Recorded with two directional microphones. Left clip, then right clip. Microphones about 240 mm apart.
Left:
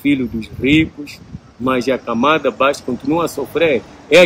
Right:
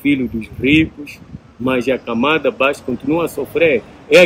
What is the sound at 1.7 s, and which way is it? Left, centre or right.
Speech, centre.